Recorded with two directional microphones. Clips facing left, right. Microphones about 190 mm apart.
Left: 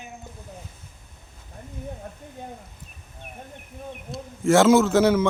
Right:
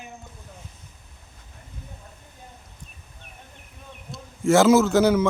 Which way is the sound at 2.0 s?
55° left (ahead or behind).